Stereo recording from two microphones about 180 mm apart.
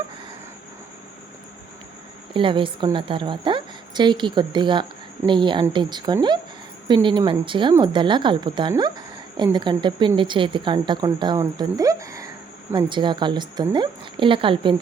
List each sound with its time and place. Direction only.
2.3 s a woman's voice: 30° right (ahead or behind)